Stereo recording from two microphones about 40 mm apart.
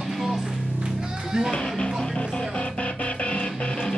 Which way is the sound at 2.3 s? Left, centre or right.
Left.